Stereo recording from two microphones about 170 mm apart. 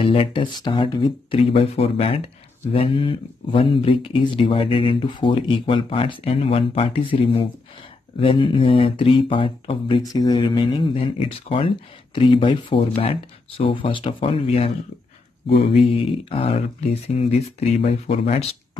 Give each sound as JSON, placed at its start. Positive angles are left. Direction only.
{"t": 0.0, "sound": "speech", "side_deg": 30}
{"t": 15.7, "sound": "speech", "side_deg": 35}